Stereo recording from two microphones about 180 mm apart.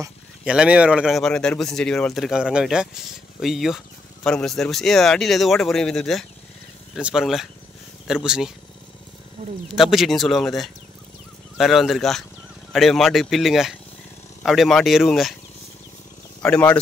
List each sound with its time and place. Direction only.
0.5 s speech: 5° right (ahead or behind)
9.4 s speech: 40° right (ahead or behind)
9.8 s speech: centre (ahead or behind)
16.4 s speech: 5° left (ahead or behind)